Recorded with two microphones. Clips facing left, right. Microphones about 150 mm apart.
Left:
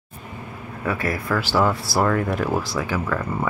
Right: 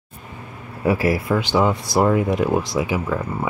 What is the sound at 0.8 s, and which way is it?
Speech, 25° right (ahead or behind).